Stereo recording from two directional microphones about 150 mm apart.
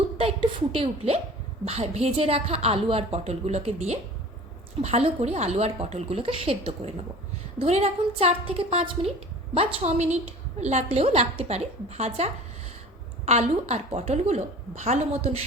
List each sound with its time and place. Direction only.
0.7 s a woman's voice: 40° right (ahead or behind)